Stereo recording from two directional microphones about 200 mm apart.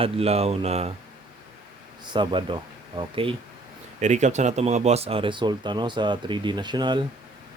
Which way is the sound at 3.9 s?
35° right (ahead or behind).